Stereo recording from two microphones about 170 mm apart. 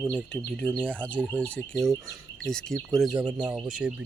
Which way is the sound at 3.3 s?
5° right (ahead or behind).